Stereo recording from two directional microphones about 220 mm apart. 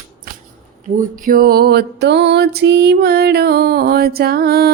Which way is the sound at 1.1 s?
40° right (ahead or behind).